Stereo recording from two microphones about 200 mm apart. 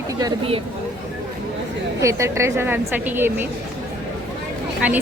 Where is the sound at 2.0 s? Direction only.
15° right (ahead or behind).